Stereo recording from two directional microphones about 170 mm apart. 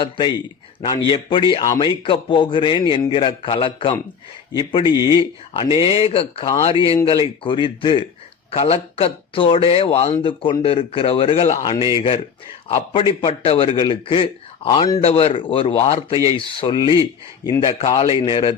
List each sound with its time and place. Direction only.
0.0 s a man's voice: 25° left (ahead or behind)